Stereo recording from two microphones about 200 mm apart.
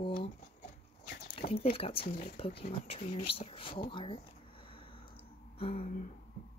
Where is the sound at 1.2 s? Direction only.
30° left (ahead or behind).